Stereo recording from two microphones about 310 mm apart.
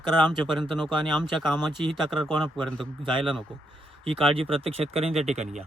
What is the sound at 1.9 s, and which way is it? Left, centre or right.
Speech, centre.